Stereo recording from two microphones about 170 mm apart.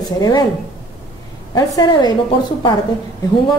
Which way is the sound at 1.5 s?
25° left (ahead or behind).